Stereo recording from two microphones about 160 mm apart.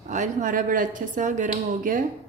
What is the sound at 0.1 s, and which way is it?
A woman's voice, 50° right (ahead or behind).